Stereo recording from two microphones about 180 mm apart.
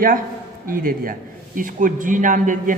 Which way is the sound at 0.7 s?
50° right (ahead or behind).